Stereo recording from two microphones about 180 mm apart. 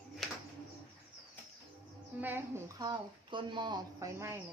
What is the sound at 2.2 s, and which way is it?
Speech, 10° right (ahead or behind).